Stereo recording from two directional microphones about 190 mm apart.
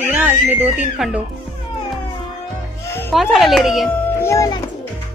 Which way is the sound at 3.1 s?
Centre (ahead or behind).